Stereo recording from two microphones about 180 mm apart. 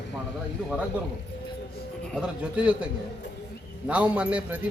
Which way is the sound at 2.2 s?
5° right (ahead or behind).